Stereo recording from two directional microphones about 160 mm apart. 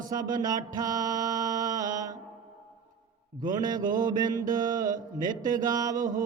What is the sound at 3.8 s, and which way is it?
Mantra, 55° right (ahead or behind).